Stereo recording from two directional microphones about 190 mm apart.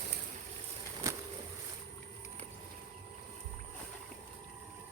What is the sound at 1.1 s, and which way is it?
Boat, 15° right (ahead or behind).